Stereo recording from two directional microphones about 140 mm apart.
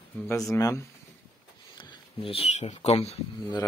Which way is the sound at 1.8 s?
35° left (ahead or behind).